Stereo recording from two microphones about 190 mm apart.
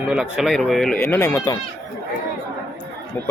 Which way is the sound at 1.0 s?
10° left (ahead or behind).